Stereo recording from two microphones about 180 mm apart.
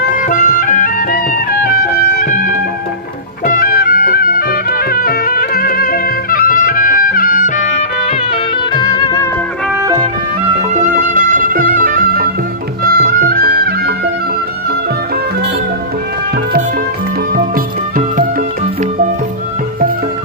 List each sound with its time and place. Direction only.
0.2 s music: 50° left (ahead or behind); by 9.3 s 20° left (ahead or behind)
9.7 s music: 20° right (ahead or behind)
10.6 s music: 40° right (ahead or behind); by 14.1 s 60° right (ahead or behind)
17.3 s music: 50° right (ahead or behind)